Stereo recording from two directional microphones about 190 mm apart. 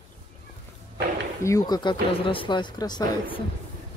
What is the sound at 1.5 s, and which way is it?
Speech, 20° left (ahead or behind).